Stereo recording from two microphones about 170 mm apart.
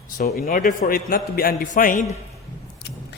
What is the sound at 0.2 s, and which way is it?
Speech, 60° left (ahead or behind).